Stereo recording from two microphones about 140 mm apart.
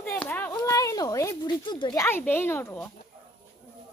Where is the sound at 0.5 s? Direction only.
25° left (ahead or behind).